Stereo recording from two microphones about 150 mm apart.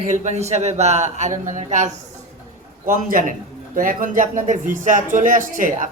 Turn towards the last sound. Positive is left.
turn(degrees=-60)  # may be behind; listen again after turning